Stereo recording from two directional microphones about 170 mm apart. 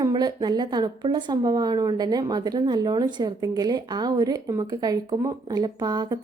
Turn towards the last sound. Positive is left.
turn(degrees=-25)  # may be behind; listen again after turning